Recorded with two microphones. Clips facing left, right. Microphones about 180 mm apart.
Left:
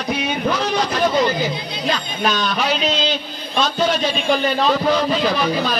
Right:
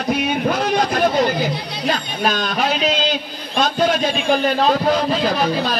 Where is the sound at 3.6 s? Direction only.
50° right (ahead or behind).